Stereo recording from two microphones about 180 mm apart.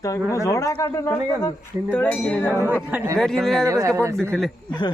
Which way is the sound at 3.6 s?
15° right (ahead or behind).